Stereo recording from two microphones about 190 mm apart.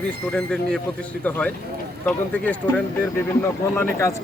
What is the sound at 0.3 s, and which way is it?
Speech, 5° left (ahead or behind).